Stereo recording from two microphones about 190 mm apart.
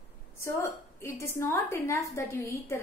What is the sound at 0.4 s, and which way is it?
A woman's voice, 15° left (ahead or behind).